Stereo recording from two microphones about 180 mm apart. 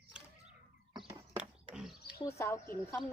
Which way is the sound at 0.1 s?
5° right (ahead or behind).